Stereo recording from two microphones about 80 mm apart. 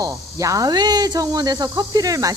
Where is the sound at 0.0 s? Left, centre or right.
Right.